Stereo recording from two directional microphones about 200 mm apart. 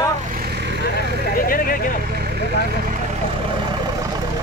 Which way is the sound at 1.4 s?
45° left (ahead or behind).